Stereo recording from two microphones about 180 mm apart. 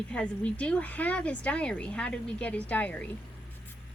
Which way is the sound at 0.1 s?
5° left (ahead or behind).